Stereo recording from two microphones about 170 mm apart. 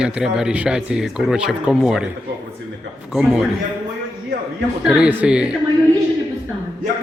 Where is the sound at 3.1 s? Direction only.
5° right (ahead or behind).